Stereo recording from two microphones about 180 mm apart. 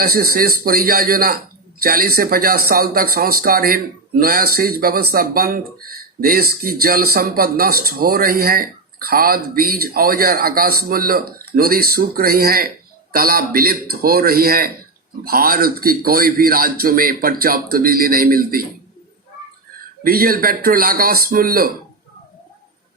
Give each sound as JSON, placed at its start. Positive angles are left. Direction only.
{"t": 0.0, "sound": "a man's voice", "side_deg": -55}
{"t": 20.1, "sound": "a man's voice", "side_deg": -55}